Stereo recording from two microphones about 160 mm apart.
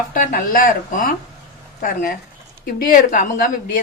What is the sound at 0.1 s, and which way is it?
A woman's voice, 60° left (ahead or behind).